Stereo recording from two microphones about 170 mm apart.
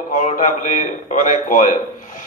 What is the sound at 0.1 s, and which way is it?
A man's voice, 45° left (ahead or behind).